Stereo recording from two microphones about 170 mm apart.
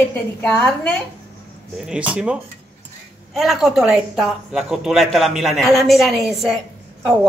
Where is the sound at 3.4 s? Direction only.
5° right (ahead or behind).